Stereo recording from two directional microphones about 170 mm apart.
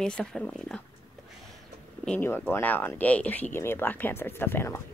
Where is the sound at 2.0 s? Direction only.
10° left (ahead or behind).